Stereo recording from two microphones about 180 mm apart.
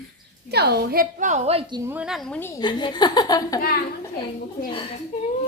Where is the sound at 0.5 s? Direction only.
65° right (ahead or behind); by 1.8 s 35° right (ahead or behind).